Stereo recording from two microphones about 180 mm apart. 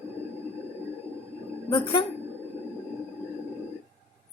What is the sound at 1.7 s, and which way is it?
Speech, 30° left (ahead or behind).